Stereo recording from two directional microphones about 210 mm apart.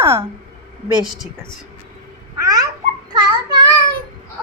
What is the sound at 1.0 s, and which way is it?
Speech, centre (ahead or behind).